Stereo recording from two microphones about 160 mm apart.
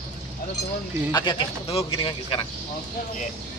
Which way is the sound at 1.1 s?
30° left (ahead or behind).